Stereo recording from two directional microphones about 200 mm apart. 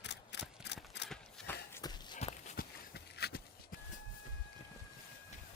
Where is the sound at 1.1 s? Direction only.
10° left (ahead or behind).